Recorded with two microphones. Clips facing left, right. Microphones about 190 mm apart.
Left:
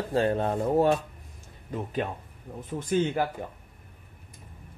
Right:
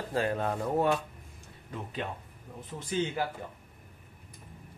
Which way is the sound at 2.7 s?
50° left (ahead or behind).